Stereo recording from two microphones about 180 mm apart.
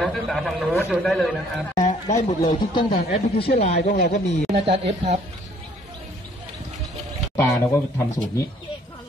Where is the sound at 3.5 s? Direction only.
40° left (ahead or behind).